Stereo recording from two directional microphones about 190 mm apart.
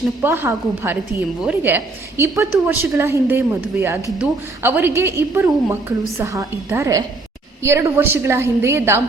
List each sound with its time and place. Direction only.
0.2 s a woman's voice: 10° right (ahead or behind)